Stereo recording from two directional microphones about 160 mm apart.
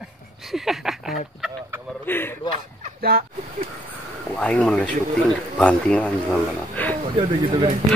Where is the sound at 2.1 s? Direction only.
15° left (ahead or behind).